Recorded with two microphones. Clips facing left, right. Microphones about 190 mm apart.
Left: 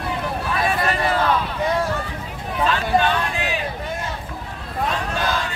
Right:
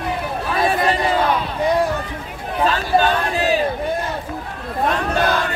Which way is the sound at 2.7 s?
40° right (ahead or behind).